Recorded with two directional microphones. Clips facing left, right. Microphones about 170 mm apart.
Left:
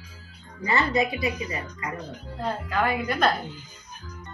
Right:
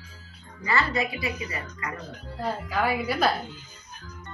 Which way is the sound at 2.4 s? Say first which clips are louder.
Left 1 dB; 5° right (ahead or behind).